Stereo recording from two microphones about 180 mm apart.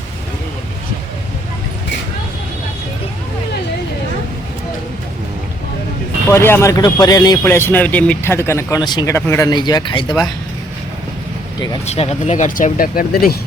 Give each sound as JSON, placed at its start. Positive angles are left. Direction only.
{"t": 6.3, "sound": "speech", "side_deg": 15}
{"t": 9.1, "sound": "speech", "side_deg": 15}
{"t": 9.5, "sound": "speech", "side_deg": 25}
{"t": 11.9, "sound": "speech", "side_deg": 35}